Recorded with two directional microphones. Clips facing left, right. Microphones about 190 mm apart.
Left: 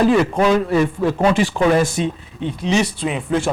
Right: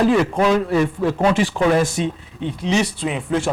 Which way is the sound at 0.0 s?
15° left (ahead or behind).